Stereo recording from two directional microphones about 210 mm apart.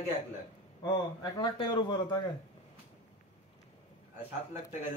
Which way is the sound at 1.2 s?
20° left (ahead or behind).